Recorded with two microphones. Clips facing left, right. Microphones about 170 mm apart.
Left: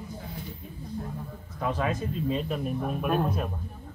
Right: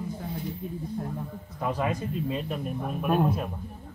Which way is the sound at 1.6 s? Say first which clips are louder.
Even; 10° right (ahead or behind).